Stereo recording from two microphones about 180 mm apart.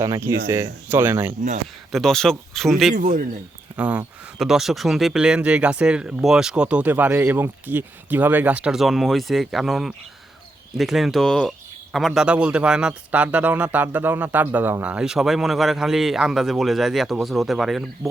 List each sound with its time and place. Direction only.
0.0 s speech: 15° right (ahead or behind)
1.3 s speech: 45° right (ahead or behind)
1.9 s a man's voice: centre (ahead or behind)
2.9 s speech: 50° right (ahead or behind)
3.8 s a man's voice: 5° right (ahead or behind)